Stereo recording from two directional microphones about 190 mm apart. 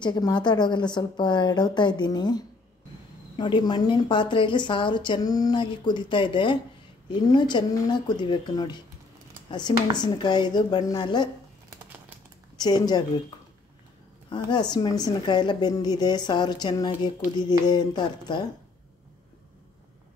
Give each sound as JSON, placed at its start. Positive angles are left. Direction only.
{"t": 0.0, "sound": "speech", "side_deg": 20}
{"t": 12.5, "sound": "speech", "side_deg": 20}
{"t": 14.3, "sound": "speech", "side_deg": 20}